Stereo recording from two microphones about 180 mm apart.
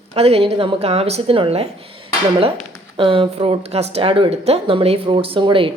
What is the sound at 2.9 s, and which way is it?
Speech, 30° right (ahead or behind).